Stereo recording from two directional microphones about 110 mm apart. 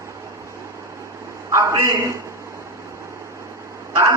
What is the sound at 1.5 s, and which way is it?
Speech, 25° right (ahead or behind).